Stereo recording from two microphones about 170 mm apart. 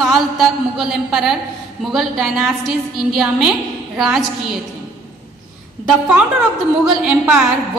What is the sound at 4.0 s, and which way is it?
Speech, centre (ahead or behind).